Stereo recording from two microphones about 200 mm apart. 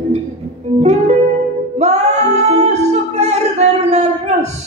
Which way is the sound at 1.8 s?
35° right (ahead or behind).